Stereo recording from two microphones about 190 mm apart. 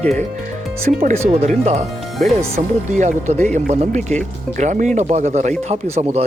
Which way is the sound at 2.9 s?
40° right (ahead or behind).